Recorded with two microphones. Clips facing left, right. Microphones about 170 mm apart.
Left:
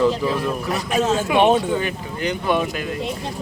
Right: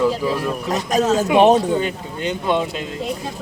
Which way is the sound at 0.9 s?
40° right (ahead or behind).